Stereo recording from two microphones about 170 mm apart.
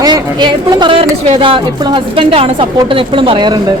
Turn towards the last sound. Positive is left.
turn(degrees=-25)  # may be behind; listen again after turning